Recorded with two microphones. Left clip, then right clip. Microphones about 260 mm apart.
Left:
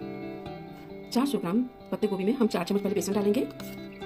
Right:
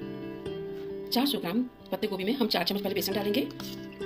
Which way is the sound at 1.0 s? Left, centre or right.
Left.